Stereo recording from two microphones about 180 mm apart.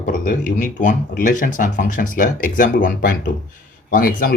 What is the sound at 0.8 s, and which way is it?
Speech, 45° left (ahead or behind).